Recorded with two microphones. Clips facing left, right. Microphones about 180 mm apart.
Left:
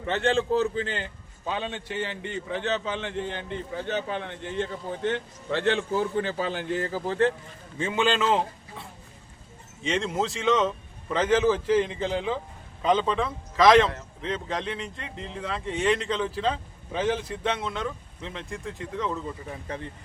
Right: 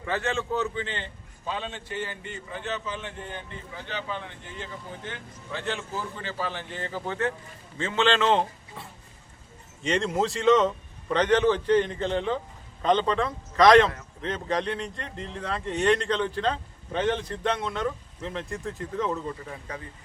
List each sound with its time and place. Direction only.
0.0 s a man's voice: 25° left (ahead or behind)
2.0 s a man's voice: 75° left (ahead or behind)
3.8 s a man's voice: 50° left (ahead or behind)
6.8 s a man's voice: 35° left (ahead or behind)
7.8 s a man's voice: 15° left (ahead or behind); by 19.2 s centre (ahead or behind)